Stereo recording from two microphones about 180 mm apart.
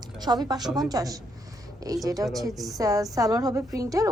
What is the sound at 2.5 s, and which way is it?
Speech, centre (ahead or behind).